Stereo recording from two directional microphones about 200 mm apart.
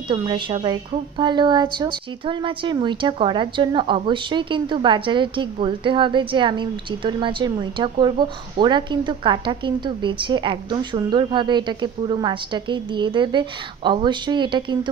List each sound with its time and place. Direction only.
0.1 s a woman's voice: 20° right (ahead or behind)